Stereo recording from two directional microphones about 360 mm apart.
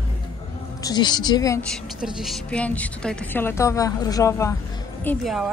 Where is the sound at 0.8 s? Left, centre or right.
Centre.